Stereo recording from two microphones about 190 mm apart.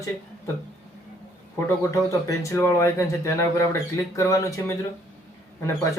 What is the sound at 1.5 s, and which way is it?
Speech, 15° left (ahead or behind).